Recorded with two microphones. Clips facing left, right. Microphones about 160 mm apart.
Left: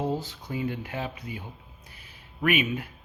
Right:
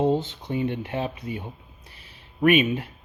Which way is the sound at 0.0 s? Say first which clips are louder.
Right 7 dB; 25° right (ahead or behind).